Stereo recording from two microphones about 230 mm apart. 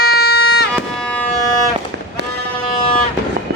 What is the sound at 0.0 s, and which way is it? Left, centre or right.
Music, left.